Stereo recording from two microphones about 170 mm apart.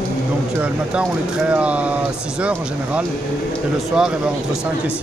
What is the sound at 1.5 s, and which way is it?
Speech, 5° right (ahead or behind).